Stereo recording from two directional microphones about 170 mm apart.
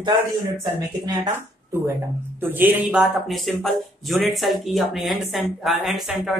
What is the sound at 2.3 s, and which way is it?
Speech, 10° right (ahead or behind).